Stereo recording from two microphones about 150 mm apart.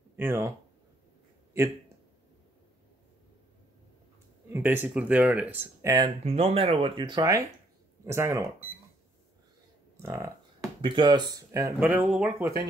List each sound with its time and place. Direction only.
0.1 s speech: 15° right (ahead or behind)
4.5 s speech: 15° right (ahead or behind)
6.0 s speech: 40° right (ahead or behind); by 8.5 s 20° right (ahead or behind)
10.0 s speech: 20° right (ahead or behind)
10.8 s speech: 30° right (ahead or behind)
11.8 s speech: 10° right (ahead or behind)